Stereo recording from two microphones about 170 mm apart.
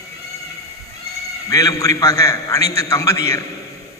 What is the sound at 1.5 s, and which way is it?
A man's voice, 20° left (ahead or behind).